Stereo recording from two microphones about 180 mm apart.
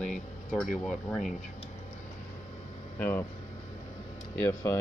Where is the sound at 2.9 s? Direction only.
10° left (ahead or behind).